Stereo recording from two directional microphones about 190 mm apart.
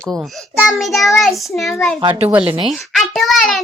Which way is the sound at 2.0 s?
30° right (ahead or behind).